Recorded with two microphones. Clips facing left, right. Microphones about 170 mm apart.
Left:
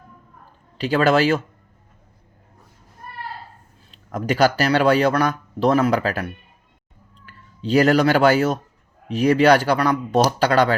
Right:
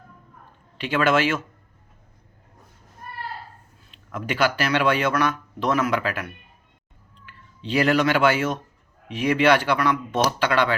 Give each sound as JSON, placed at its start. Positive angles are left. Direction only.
{"t": 0.8, "sound": "speech", "side_deg": 35}
{"t": 3.9, "sound": "speech", "side_deg": 40}
{"t": 7.3, "sound": "speech", "side_deg": 40}